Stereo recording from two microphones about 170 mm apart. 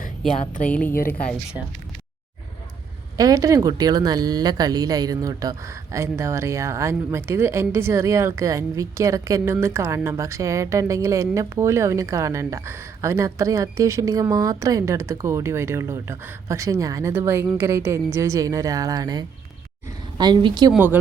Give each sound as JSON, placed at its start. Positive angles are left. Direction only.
{"t": 0.3, "sound": "a woman's voice", "side_deg": 45}
{"t": 0.7, "sound": "a woman's voice", "side_deg": 10}
{"t": 1.6, "sound": "speech", "side_deg": -10}
{"t": 3.2, "sound": "a woman's voice", "side_deg": -20}
{"t": 20.7, "sound": "speech", "side_deg": -10}